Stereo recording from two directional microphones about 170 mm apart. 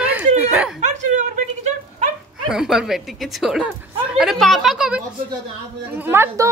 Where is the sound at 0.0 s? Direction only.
10° right (ahead or behind).